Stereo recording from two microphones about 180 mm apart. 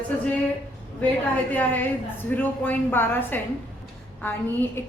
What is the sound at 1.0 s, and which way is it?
A woman's voice, 10° left (ahead or behind).